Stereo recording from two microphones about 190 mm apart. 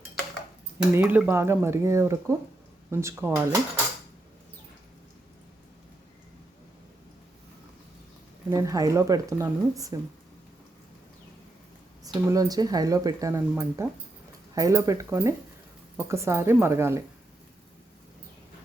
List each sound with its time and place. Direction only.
0.9 s speech: 10° right (ahead or behind)
8.4 s speech: 15° right (ahead or behind)
12.0 s speech: 20° right (ahead or behind)